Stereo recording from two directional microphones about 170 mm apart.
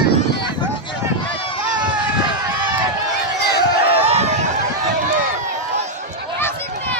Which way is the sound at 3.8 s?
35° right (ahead or behind).